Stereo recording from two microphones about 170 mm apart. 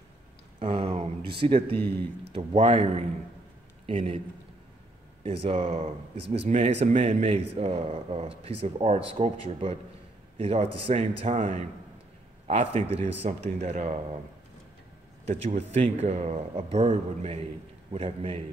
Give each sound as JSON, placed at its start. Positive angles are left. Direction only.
{"t": 0.6, "sound": "a sound", "side_deg": -35}
{"t": 1.3, "sound": "speech", "side_deg": -30}
{"t": 5.2, "sound": "speech", "side_deg": -35}
{"t": 15.2, "sound": "speech", "side_deg": -40}